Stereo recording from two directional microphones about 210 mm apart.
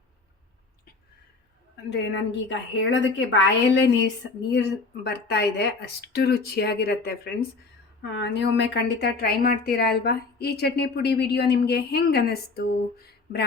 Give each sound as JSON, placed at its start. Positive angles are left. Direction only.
{"t": 1.7, "sound": "a woman's voice", "side_deg": 55}